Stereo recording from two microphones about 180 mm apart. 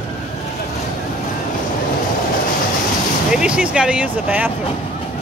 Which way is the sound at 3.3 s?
5° right (ahead or behind).